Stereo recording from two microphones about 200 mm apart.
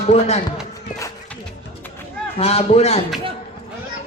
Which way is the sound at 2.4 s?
30° left (ahead or behind).